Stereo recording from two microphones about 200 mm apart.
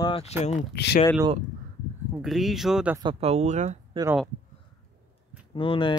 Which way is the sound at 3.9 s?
15° right (ahead or behind).